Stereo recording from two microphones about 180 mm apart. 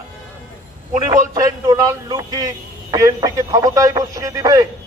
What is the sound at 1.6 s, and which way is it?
Speech, 25° right (ahead or behind).